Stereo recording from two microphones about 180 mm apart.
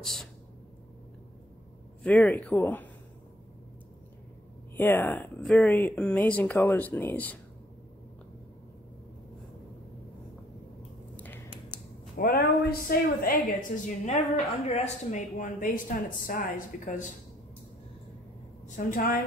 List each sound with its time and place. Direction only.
0.0 s speech: centre (ahead or behind)
2.0 s speech: 5° left (ahead or behind)
4.7 s speech: 10° left (ahead or behind)
12.2 s speech: 55° left (ahead or behind)
18.9 s speech: 50° left (ahead or behind)